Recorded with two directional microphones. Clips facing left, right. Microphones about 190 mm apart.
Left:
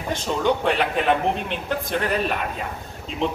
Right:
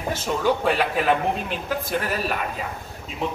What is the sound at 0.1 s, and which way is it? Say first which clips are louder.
A man's voice: left 1 dB; 5° right (ahead or behind).